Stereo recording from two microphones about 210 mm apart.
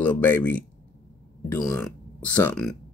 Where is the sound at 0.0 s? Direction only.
10° left (ahead or behind).